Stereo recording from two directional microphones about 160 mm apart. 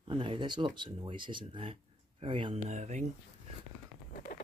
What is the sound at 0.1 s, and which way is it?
Speech, 30° right (ahead or behind).